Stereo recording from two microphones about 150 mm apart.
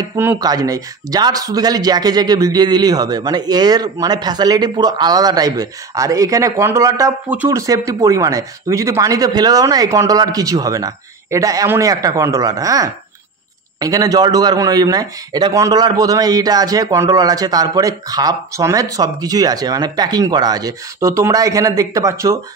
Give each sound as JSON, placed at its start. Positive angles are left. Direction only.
{"t": 0.0, "sound": "speech", "side_deg": -25}
{"t": 7.2, "sound": "speech", "side_deg": -10}
{"t": 7.5, "sound": "speech", "side_deg": -20}